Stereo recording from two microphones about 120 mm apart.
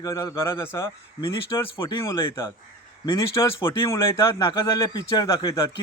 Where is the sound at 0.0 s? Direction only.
25° left (ahead or behind).